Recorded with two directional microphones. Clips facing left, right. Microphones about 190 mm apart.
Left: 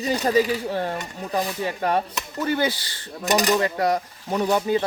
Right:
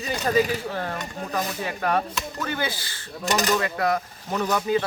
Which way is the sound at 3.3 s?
15° left (ahead or behind).